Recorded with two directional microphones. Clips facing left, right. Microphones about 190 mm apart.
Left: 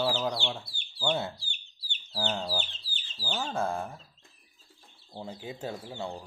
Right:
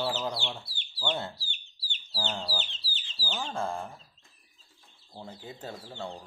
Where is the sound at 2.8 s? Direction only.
50° left (ahead or behind).